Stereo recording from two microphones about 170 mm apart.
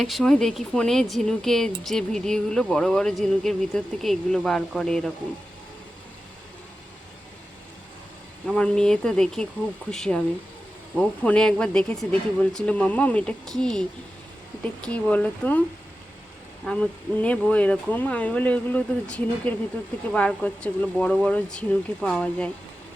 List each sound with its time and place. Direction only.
0.0 s speech: centre (ahead or behind)
8.5 s speech: 5° left (ahead or behind)
16.6 s speech: 5° left (ahead or behind)